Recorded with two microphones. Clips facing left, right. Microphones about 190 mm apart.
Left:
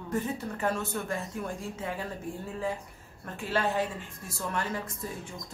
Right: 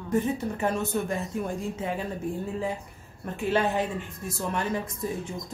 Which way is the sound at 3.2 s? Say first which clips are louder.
Right 5 dB; 20° right (ahead or behind).